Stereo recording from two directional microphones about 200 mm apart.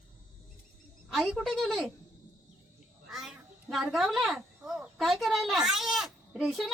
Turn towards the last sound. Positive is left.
turn(degrees=0)  # may be behind; listen again after turning